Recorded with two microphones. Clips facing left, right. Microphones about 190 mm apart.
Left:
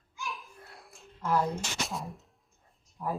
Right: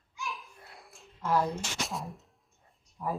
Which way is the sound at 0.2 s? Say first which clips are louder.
Even; centre (ahead or behind).